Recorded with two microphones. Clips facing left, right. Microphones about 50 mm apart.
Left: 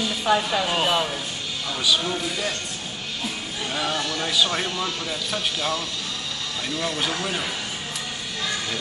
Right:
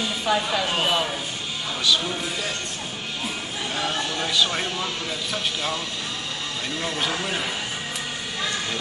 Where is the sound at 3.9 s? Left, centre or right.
Right.